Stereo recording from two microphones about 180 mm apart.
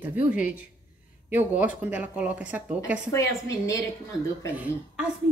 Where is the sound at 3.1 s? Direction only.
15° left (ahead or behind).